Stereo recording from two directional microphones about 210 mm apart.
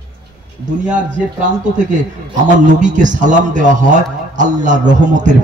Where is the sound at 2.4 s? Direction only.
35° right (ahead or behind).